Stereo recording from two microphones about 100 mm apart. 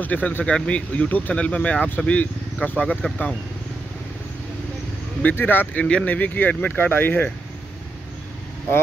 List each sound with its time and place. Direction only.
0.0 s speech: 15° left (ahead or behind)
5.2 s speech: 20° left (ahead or behind)